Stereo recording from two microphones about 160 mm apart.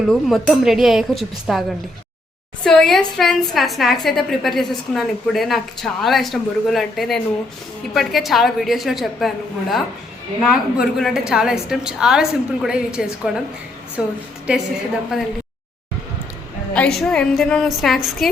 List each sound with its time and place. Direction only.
0.1 s a woman's voice: centre (ahead or behind)
2.6 s a woman's voice: 5° left (ahead or behind)
17.0 s a woman's voice: 5° left (ahead or behind)